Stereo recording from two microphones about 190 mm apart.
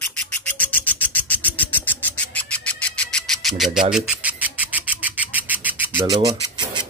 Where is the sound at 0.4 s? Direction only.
10° left (ahead or behind); by 6.3 s 10° right (ahead or behind).